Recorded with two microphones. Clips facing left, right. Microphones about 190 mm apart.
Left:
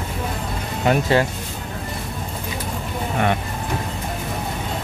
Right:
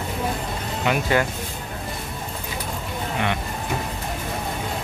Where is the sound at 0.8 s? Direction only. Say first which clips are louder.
Left 4 dB; 35° left (ahead or behind).